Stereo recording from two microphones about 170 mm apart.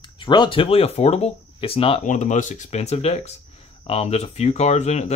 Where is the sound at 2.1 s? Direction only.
45° left (ahead or behind).